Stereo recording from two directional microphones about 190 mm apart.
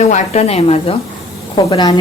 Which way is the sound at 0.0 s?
35° left (ahead or behind).